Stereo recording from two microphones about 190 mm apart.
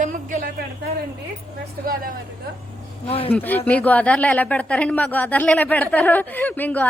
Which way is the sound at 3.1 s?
30° left (ahead or behind).